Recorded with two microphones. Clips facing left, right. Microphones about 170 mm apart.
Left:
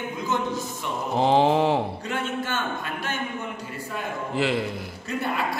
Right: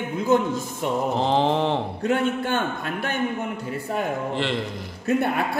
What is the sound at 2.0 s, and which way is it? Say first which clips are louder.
A man's voice: right 6 dB; 50° right (ahead or behind).